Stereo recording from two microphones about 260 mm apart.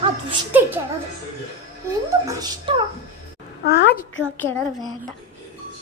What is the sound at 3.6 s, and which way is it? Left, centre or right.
Speech, left.